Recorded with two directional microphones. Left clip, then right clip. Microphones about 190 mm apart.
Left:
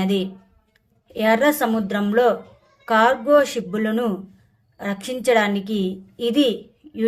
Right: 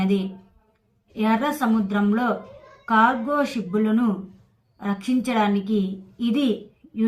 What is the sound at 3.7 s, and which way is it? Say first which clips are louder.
A woman's voice: left 1 dB; 45° left (ahead or behind).